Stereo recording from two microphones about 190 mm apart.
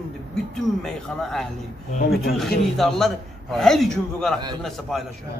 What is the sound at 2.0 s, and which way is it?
Speech, 55° left (ahead or behind).